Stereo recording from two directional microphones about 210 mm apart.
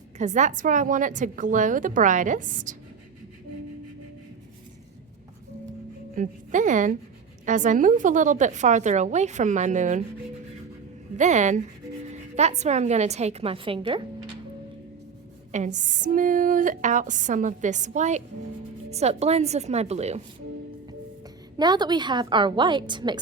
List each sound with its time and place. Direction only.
0.2 s a woman's voice: 35° right (ahead or behind)
6.1 s a woman's voice: 35° right (ahead or behind)
11.2 s a woman's voice: 35° right (ahead or behind)
15.5 s a woman's voice: 35° right (ahead or behind)
21.6 s a woman's voice: 20° right (ahead or behind)